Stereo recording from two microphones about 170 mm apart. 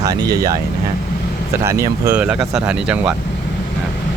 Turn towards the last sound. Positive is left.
turn(degrees=-5)  # may be behind; listen again after turning